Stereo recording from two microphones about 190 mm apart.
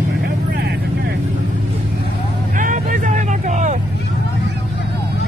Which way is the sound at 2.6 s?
45° right (ahead or behind).